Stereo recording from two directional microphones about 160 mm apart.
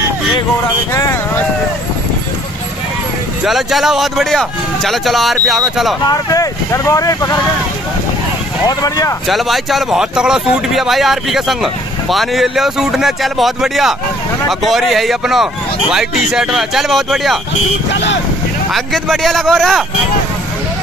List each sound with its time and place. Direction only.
0.9 s vehicle: 20° left (ahead or behind)
3.4 s speech: centre (ahead or behind)
6.0 s speech: 20° left (ahead or behind)
8.6 s speech: 20° left (ahead or behind)
9.3 s speech: centre (ahead or behind)
18.7 s speech: centre (ahead or behind)